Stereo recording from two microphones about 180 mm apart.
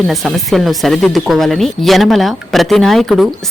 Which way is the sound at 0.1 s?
Centre (ahead or behind).